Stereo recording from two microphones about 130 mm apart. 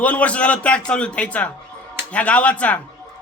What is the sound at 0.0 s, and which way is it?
A man's voice, 10° left (ahead or behind).